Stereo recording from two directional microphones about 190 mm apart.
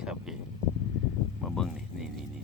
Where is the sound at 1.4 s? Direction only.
Centre (ahead or behind).